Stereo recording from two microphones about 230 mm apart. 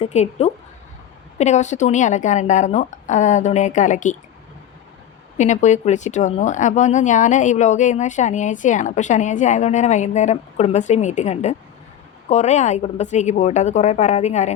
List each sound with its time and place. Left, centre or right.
0.0 s speech: left
5.4 s speech: left